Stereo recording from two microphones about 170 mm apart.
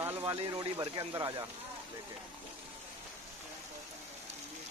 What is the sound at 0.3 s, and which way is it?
Speech, 25° right (ahead or behind).